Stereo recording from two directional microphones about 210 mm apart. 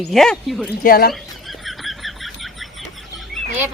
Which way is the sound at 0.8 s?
45° left (ahead or behind).